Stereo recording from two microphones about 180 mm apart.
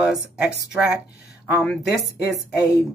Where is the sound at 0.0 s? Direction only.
Centre (ahead or behind).